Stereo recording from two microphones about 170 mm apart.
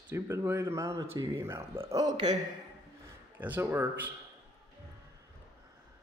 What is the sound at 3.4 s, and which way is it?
Speech, 10° right (ahead or behind).